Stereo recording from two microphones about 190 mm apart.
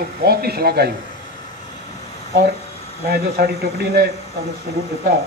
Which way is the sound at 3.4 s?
55° right (ahead or behind).